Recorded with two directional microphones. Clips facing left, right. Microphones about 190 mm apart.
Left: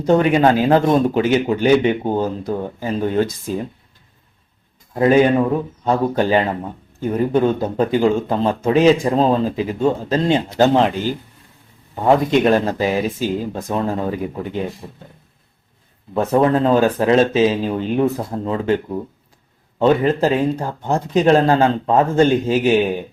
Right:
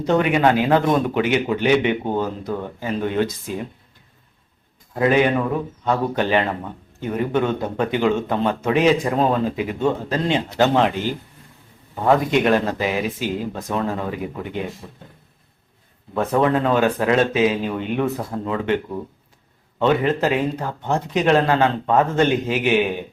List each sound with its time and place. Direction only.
0.0 s speech: 35° left (ahead or behind)
4.9 s speech: 35° left (ahead or behind)
12.0 s speech: 30° left (ahead or behind)
16.1 s speech: 30° left (ahead or behind)
19.8 s speech: 35° left (ahead or behind)